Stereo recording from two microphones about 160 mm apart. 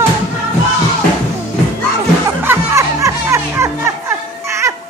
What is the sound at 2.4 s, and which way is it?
Music, 15° right (ahead or behind).